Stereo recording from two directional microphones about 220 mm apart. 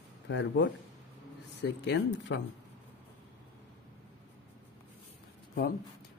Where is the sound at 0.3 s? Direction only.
55° left (ahead or behind).